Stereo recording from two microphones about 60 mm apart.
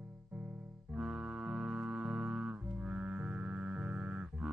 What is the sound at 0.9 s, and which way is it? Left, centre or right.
Music, right.